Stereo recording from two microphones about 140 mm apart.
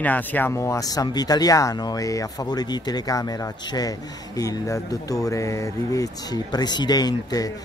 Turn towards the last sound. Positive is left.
turn(degrees=30)  # may be behind; listen again after turning